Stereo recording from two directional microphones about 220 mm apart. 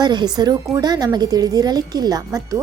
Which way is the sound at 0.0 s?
20° right (ahead or behind).